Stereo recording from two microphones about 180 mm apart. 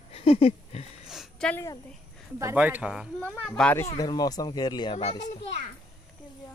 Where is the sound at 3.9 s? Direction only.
20° left (ahead or behind).